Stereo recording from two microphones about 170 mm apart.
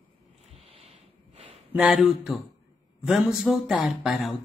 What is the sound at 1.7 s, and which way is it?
Speech, 5° right (ahead or behind).